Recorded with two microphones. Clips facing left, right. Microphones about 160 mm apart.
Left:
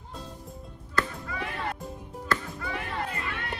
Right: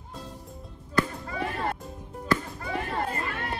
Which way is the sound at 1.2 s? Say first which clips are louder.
Right 3 dB; 35° right (ahead or behind).